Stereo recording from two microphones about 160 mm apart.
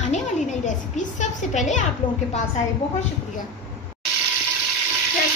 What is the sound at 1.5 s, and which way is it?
Speech, 50° left (ahead or behind).